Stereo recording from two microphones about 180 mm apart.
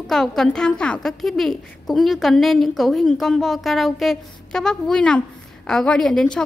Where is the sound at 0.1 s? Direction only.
Centre (ahead or behind).